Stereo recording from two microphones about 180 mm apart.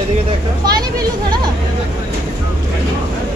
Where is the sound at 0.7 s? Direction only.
20° right (ahead or behind).